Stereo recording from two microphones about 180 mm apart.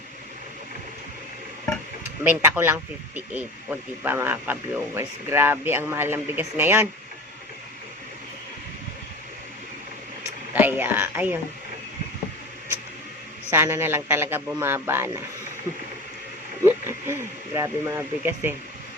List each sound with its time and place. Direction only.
2.2 s speech: 10° right (ahead or behind)
10.5 s speech: 10° right (ahead or behind)
13.5 s speech: 15° right (ahead or behind)
16.6 s speech: 15° right (ahead or behind)